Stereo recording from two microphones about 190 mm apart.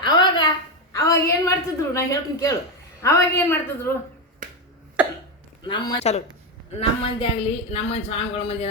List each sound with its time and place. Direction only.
0.0 s a sound: 25° left (ahead or behind)
3.0 s a woman's voice: 15° left (ahead or behind)
5.6 s speech: 25° left (ahead or behind)